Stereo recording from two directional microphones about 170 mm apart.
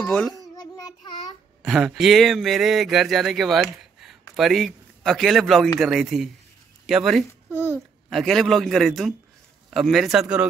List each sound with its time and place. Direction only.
0.0 s a child's voice: 10° left (ahead or behind)
0.4 s child singing: 20° left (ahead or behind)
1.6 s a man's voice: centre (ahead or behind)